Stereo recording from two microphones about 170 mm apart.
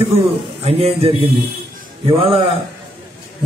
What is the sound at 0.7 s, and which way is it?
A man's voice, 40° right (ahead or behind).